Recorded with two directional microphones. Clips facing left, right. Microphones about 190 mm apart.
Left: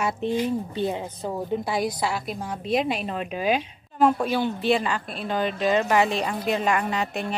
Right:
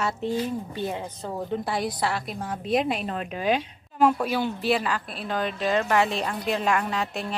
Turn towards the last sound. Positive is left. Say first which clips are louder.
# left 2 dB
turn(degrees=0)  # may be behind; listen again after turning